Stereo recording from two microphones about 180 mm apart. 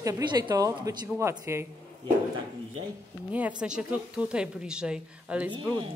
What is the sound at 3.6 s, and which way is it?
A woman's voice, 5° right (ahead or behind).